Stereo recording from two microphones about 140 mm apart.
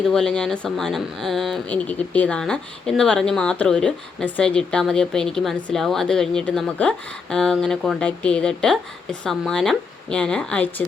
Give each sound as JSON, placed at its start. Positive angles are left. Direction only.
{"t": 0.1, "sound": "speech", "side_deg": 5}